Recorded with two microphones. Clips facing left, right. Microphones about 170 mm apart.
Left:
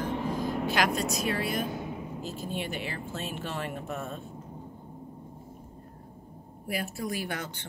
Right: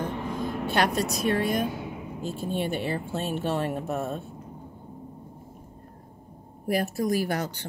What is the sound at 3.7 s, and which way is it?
Speech, 40° right (ahead or behind).